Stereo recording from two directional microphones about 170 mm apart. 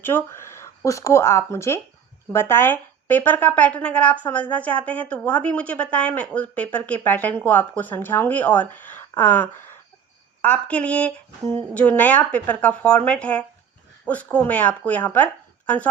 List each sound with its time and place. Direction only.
0.0 s speech: 15° left (ahead or behind)